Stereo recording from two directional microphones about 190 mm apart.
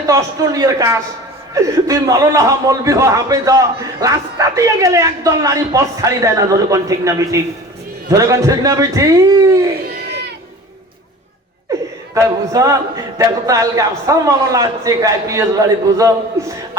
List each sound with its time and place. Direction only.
0.1 s a man's voice: 15° right (ahead or behind)
12.1 s a man's voice: 15° right (ahead or behind)